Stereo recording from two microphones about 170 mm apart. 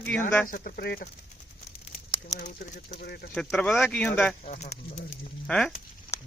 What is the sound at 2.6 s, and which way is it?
Speech, 70° left (ahead or behind).